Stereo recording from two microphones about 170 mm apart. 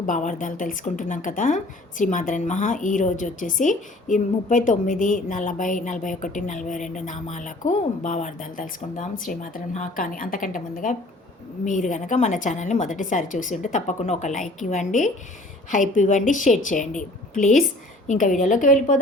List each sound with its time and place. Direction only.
0.0 s a woman's voice: 50° left (ahead or behind)